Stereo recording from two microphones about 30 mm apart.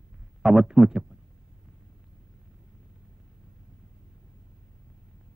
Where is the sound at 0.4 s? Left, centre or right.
Right.